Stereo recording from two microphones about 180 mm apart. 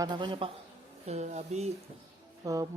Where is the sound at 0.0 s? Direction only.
25° right (ahead or behind).